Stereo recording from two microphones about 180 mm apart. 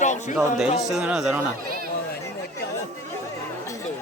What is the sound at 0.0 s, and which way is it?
Music, 40° left (ahead or behind).